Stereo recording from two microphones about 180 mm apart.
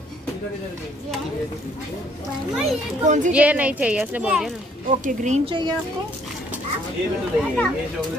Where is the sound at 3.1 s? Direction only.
40° right (ahead or behind).